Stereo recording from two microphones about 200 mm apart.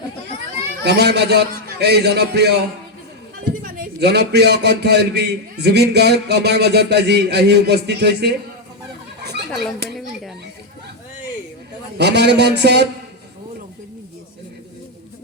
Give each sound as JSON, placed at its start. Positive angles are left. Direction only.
{"t": 0.8, "sound": "a man's voice", "side_deg": -55}
{"t": 3.6, "sound": "a man's voice", "side_deg": -55}
{"t": 9.2, "sound": "a sound", "side_deg": -55}
{"t": 9.5, "sound": "speech", "side_deg": 0}
{"t": 11.9, "sound": "a man's voice", "side_deg": -55}